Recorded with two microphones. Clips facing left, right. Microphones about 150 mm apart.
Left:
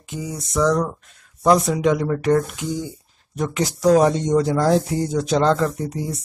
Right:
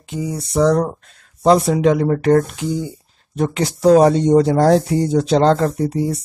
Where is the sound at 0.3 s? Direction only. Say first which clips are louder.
Right 4 dB; 30° right (ahead or behind).